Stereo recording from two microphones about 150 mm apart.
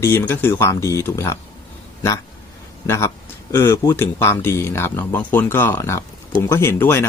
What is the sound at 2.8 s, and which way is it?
A man's voice, 20° left (ahead or behind).